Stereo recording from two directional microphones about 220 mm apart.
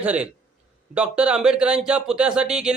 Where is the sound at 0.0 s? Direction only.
5° right (ahead or behind).